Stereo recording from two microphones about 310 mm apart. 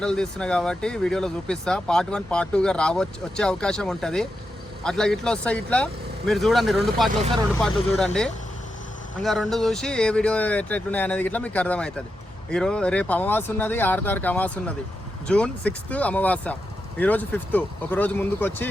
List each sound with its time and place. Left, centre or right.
0.0 s speech: centre